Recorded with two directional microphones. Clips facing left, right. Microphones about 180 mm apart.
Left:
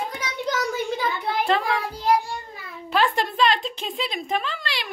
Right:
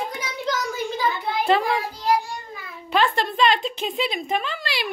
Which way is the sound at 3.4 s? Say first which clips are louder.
Right 2 dB; centre (ahead or behind).